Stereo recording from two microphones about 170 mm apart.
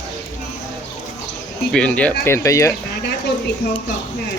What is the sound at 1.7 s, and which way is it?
Speech, 5° left (ahead or behind).